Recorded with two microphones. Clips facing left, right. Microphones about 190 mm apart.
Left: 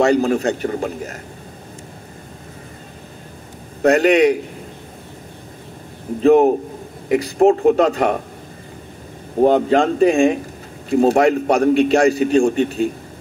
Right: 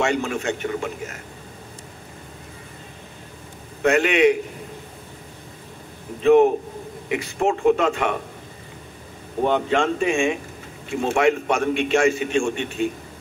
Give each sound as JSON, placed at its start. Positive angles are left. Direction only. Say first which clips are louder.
{"t": 0.0, "sound": "a man's voice", "louder": "left 8 dB", "side_deg": 35}
{"t": 3.8, "sound": "a man's voice", "louder": "left 4 dB", "side_deg": 35}
{"t": 6.2, "sound": "a man's voice", "louder": "left 3 dB", "side_deg": 35}
{"t": 9.4, "sound": "a man's voice", "louder": "left 7 dB", "side_deg": 35}